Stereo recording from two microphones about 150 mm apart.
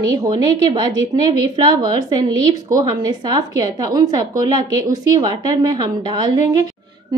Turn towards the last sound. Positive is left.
turn(degrees=-30)  # may be behind; listen again after turning